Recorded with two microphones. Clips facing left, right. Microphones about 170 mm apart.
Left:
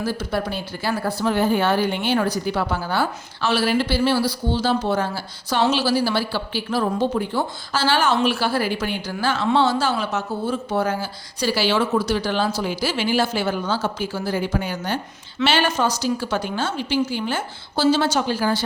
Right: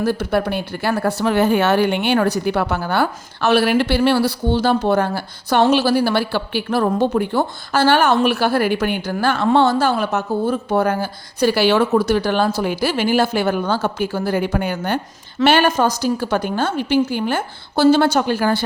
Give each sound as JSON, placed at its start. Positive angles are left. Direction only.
{"t": 0.0, "sound": "speech", "side_deg": -55}